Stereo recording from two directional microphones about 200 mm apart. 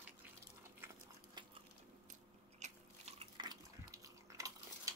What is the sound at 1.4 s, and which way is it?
Biting, 20° right (ahead or behind).